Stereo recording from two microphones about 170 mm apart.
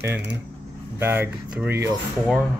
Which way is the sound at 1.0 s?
15° right (ahead or behind).